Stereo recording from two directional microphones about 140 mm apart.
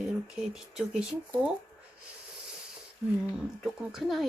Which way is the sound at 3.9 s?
Centre (ahead or behind).